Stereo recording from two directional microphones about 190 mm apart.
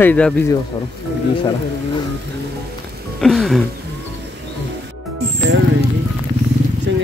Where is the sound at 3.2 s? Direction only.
Centre (ahead or behind).